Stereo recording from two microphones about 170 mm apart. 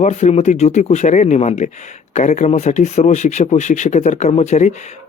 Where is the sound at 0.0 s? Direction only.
40° left (ahead or behind).